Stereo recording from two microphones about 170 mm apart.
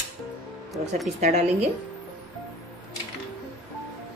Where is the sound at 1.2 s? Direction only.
40° right (ahead or behind).